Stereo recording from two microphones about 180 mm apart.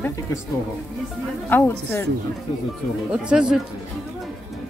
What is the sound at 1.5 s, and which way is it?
Speech, 10° left (ahead or behind).